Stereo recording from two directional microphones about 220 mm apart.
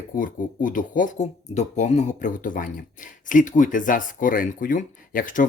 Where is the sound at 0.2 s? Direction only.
35° left (ahead or behind).